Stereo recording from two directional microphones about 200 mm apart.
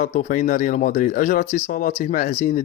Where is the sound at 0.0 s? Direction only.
40° left (ahead or behind).